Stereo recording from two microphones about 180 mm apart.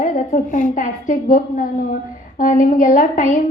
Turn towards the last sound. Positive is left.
turn(degrees=45)  # may be behind; listen again after turning